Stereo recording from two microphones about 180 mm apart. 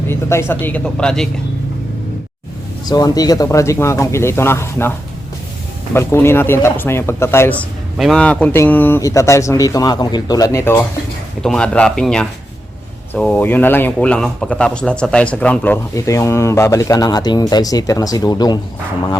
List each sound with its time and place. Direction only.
0.1 s speech: 15° left (ahead or behind)
2.8 s speech: 20° left (ahead or behind)
7.9 s speech: centre (ahead or behind); by 18.6 s 20° left (ahead or behind)